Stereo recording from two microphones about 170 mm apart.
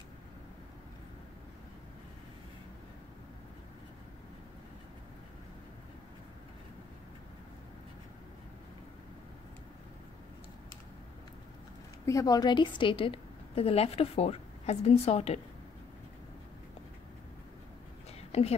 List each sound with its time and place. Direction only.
12.1 s a woman's voice: 20° left (ahead or behind); by 15.4 s 40° left (ahead or behind)
18.3 s speech: 40° left (ahead or behind)